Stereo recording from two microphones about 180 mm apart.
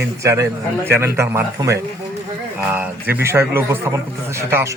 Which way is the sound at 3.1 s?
15° right (ahead or behind).